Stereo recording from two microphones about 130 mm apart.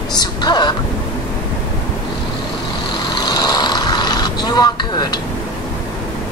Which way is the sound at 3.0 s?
35° left (ahead or behind).